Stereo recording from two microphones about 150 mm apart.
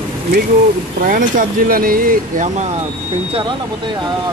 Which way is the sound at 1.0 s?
70° right (ahead or behind).